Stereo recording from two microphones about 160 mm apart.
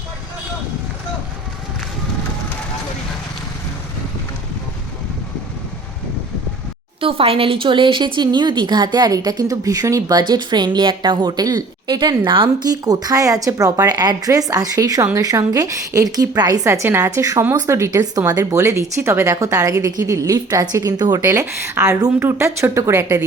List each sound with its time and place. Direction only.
7.0 s speech: 35° right (ahead or behind); by 23.2 s 15° right (ahead or behind)